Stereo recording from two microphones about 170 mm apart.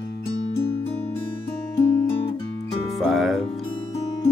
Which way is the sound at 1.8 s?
15° left (ahead or behind).